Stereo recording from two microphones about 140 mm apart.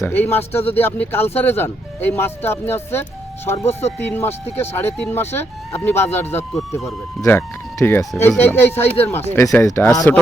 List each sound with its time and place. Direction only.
0.0 s speech: 15° left (ahead or behind)
3.7 s speech: 50° left (ahead or behind)
4.0 s speech: 15° left (ahead or behind)